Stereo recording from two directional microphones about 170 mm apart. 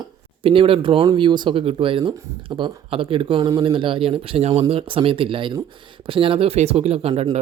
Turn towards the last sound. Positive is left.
turn(degrees=-30)  # may be behind; listen again after turning